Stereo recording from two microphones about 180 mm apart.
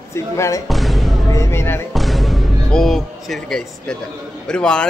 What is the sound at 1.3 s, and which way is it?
Speech, 15° left (ahead or behind).